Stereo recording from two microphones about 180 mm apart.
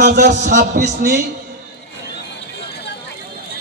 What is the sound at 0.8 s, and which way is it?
Speech, 70° right (ahead or behind).